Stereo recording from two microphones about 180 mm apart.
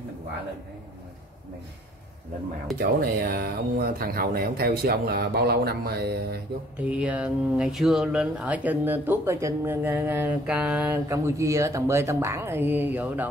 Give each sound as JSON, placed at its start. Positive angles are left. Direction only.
{"t": 2.8, "sound": "speech", "side_deg": -55}
{"t": 6.8, "sound": "speech", "side_deg": -5}